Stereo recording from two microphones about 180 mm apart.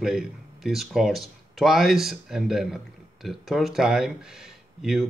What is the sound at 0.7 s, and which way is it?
Speech, centre (ahead or behind).